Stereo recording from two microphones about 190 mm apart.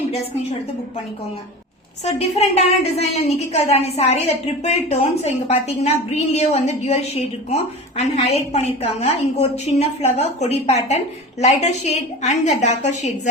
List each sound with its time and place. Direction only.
2.0 s a woman's voice: 35° left (ahead or behind)